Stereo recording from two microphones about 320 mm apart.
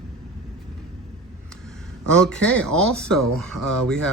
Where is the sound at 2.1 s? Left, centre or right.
Centre.